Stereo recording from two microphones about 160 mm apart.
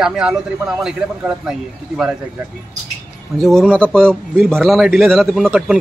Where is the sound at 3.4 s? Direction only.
Centre (ahead or behind).